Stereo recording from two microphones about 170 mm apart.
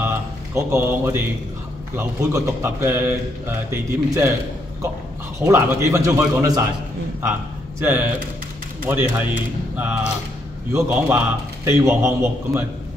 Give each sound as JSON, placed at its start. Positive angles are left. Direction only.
{"t": 0.6, "sound": "speech", "side_deg": -15}
{"t": 5.4, "sound": "speech", "side_deg": -15}
{"t": 7.8, "sound": "speech", "side_deg": -10}